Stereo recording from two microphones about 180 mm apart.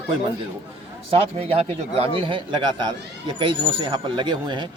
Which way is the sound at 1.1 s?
35° right (ahead or behind).